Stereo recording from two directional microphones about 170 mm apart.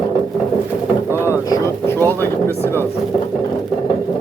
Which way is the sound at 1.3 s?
15° left (ahead or behind).